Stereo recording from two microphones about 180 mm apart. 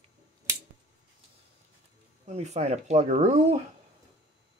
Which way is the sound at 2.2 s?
35° right (ahead or behind).